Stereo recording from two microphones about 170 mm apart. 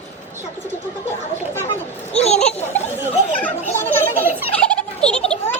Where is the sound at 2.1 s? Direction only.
40° left (ahead or behind).